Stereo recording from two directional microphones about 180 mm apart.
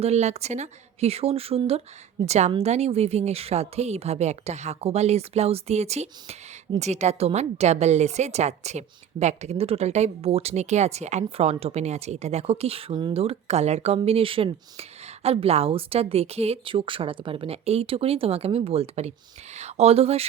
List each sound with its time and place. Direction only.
0.0 s a woman's voice: 40° right (ahead or behind)